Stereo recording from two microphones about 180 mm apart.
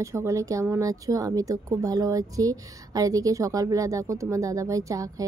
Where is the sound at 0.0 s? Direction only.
15° right (ahead or behind).